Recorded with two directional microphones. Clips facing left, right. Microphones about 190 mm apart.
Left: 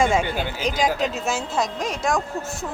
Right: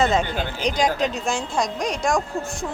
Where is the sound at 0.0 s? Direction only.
10° left (ahead or behind).